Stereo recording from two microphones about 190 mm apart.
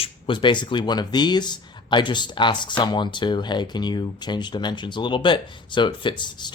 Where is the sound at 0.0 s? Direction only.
25° left (ahead or behind).